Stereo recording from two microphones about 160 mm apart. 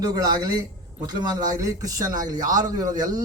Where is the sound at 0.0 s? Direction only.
25° right (ahead or behind).